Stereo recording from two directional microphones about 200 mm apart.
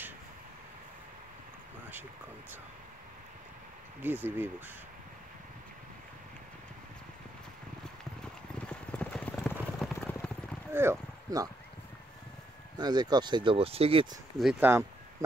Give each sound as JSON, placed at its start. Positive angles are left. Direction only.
{"t": 4.0, "sound": "speech", "side_deg": -10}
{"t": 8.2, "sound": "clip-clop", "side_deg": 5}
{"t": 10.7, "sound": "speech", "side_deg": -10}
{"t": 12.7, "sound": "speech", "side_deg": -20}
{"t": 14.4, "sound": "speech", "side_deg": -5}